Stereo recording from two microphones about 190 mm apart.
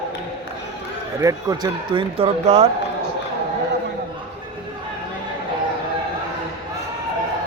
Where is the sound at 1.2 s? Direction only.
20° right (ahead or behind).